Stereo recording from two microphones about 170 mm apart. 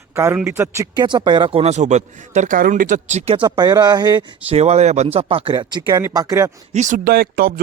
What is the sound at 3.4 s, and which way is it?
Speech, 25° right (ahead or behind).